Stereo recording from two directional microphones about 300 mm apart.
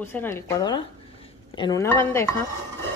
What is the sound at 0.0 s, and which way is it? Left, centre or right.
Speech, centre.